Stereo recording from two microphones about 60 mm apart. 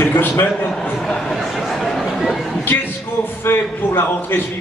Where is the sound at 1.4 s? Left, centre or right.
Centre.